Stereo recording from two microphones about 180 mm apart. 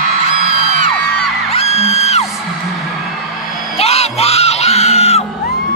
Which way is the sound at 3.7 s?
35° left (ahead or behind).